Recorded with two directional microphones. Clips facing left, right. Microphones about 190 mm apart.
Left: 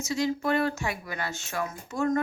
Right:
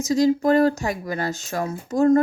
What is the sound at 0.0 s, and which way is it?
Speech, 40° right (ahead or behind).